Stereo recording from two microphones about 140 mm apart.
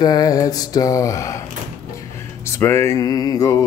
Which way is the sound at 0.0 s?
30° left (ahead or behind).